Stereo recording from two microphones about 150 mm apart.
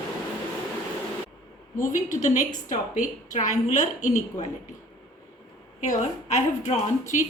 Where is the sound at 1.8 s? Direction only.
60° left (ahead or behind).